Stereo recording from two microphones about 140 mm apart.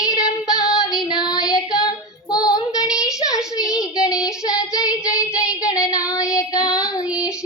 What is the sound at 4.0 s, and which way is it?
Child singing, 25° left (ahead or behind).